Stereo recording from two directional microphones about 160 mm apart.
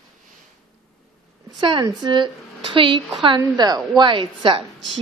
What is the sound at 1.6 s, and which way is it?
A woman's voice, 30° right (ahead or behind).